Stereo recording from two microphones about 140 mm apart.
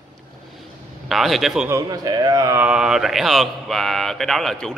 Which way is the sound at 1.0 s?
Centre (ahead or behind).